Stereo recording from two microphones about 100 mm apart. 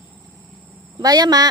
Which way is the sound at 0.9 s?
40° right (ahead or behind).